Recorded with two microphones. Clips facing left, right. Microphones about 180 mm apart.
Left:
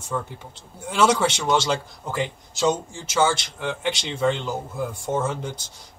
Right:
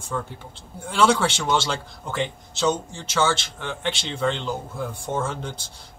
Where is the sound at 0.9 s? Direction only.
5° left (ahead or behind).